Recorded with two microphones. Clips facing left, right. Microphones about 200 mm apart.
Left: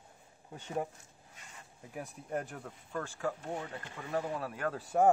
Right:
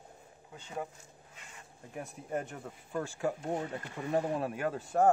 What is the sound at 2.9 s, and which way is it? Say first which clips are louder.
Speech: right 3 dB; 15° right (ahead or behind).